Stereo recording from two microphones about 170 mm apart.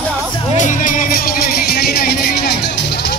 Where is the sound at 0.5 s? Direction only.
50° left (ahead or behind).